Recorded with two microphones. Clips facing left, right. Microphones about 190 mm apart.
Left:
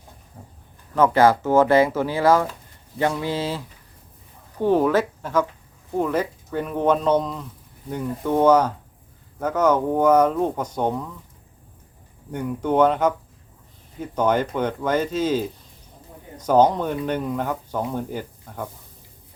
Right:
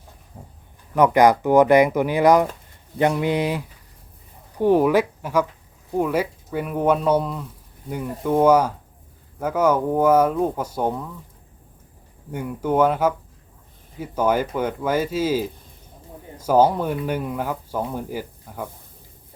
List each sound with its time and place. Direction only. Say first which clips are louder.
0.4 s a sound: right 2 dB; 15° right (ahead or behind)
0.9 s speech: right 1 dB; 15° right (ahead or behind)
12.3 s speech: even; 5° right (ahead or behind)